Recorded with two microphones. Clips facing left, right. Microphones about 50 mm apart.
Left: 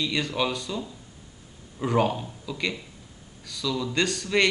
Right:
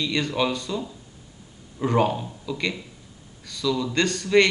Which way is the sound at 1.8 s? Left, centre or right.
Centre.